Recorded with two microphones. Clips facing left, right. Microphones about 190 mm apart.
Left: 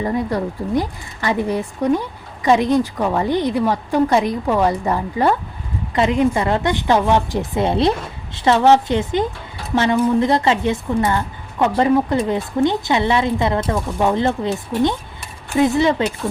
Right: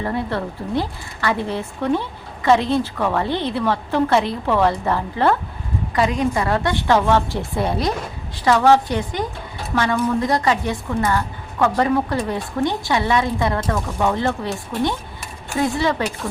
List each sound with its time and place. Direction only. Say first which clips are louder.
0.0 s a woman's voice: left 3 dB; 15° left (ahead or behind)